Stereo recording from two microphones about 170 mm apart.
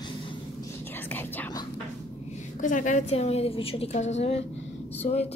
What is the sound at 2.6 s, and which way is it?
A woman's voice, 50° left (ahead or behind).